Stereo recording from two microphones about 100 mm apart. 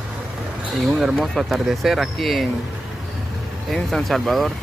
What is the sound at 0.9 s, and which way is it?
Speech, 5° right (ahead or behind).